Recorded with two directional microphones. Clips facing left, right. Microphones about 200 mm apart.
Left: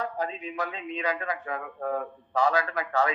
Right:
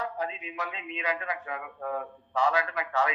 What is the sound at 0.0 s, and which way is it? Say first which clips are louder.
Speech: left 2 dB; 40° left (ahead or behind).